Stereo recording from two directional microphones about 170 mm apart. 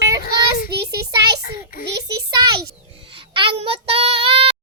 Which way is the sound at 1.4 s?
55° left (ahead or behind).